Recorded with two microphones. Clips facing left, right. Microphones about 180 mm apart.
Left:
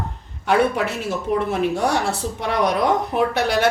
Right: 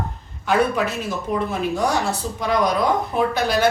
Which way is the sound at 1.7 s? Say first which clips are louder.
Even; 70° left (ahead or behind).